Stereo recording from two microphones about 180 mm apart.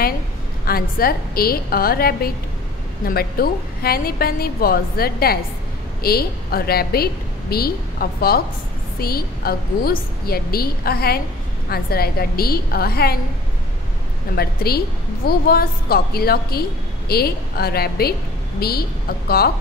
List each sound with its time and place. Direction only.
0.7 s a woman's voice: 55° left (ahead or behind)
14.3 s a woman's voice: 60° left (ahead or behind)